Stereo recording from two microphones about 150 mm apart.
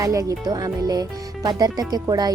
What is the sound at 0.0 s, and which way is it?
Speech, 20° right (ahead or behind).